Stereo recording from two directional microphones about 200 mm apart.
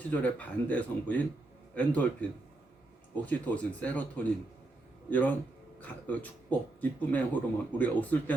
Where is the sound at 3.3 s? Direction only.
5° left (ahead or behind).